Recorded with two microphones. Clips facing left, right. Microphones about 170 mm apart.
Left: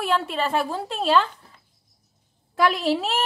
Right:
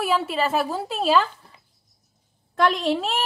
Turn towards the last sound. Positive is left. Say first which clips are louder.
# even
turn(degrees=0)  # may be behind; listen again after turning